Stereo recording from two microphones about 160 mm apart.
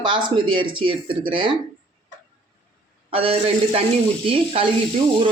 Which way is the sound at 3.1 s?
35° right (ahead or behind).